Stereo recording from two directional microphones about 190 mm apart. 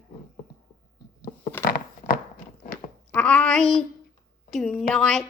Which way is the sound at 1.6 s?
50° left (ahead or behind).